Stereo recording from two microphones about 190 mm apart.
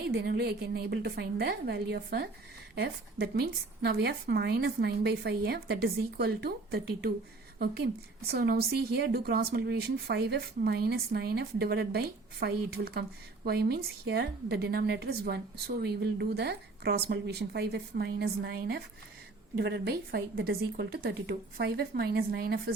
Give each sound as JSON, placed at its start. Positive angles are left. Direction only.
{"t": 0.1, "sound": "speech", "side_deg": -60}